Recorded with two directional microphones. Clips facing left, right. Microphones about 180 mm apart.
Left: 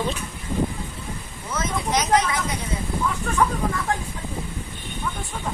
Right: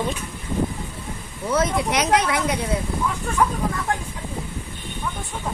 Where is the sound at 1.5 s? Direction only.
65° right (ahead or behind).